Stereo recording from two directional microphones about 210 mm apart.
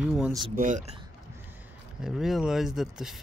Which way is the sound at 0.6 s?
35° right (ahead or behind).